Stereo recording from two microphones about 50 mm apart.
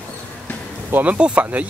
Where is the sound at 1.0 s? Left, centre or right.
Right.